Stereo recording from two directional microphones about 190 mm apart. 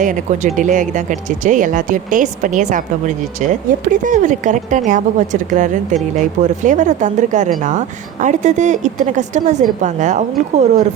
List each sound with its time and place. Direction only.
0.0 s speech: 40° right (ahead or behind)